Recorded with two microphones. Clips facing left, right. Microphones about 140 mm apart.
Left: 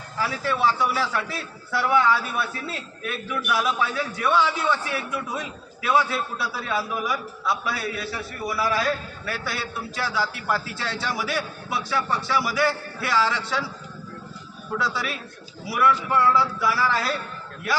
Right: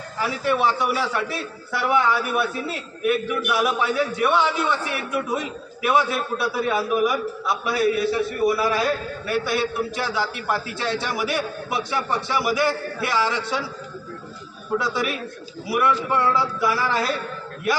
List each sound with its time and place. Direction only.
0.2 s a man's voice: 20° right (ahead or behind)
14.8 s a man's voice: 20° right (ahead or behind)